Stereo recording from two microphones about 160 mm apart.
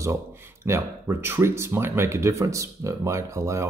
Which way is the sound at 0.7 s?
15° right (ahead or behind).